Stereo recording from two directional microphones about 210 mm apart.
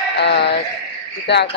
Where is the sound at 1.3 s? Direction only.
55° left (ahead or behind).